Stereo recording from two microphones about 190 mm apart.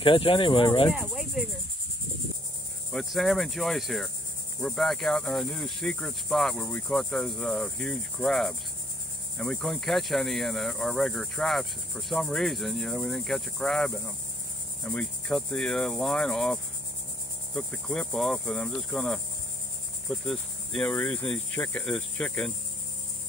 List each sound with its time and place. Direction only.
0.0 s speech: 25° left (ahead or behind)
0.9 s speech: 5° right (ahead or behind)
2.9 s speech: centre (ahead or behind)
17.6 s speech: 5° left (ahead or behind)